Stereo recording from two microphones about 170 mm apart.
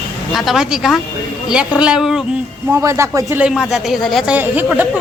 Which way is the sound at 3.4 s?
Centre (ahead or behind).